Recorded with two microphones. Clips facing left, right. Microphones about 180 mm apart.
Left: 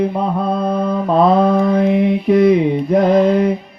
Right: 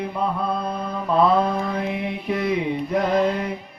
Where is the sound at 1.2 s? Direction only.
45° left (ahead or behind).